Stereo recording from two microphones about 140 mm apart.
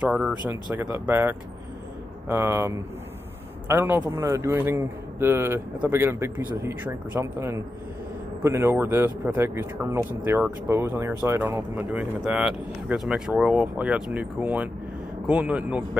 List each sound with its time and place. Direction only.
0.0 s a man's voice: 5° right (ahead or behind)